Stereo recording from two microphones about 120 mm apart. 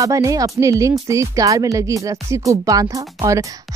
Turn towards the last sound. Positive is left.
turn(degrees=-25)  # may be behind; listen again after turning